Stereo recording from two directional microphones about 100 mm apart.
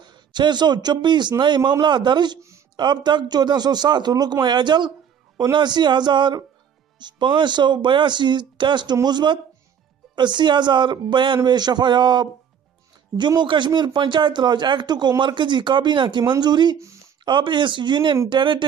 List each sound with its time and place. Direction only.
0.0 s speech: 50° right (ahead or behind)
13.3 s speech: 50° right (ahead or behind)